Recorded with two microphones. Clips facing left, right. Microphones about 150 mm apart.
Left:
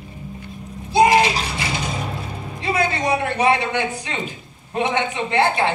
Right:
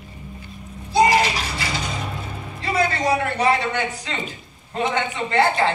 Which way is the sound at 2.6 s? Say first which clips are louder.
Even; 20° left (ahead or behind).